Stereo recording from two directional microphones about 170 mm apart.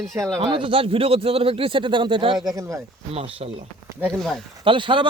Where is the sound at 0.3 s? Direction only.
30° right (ahead or behind).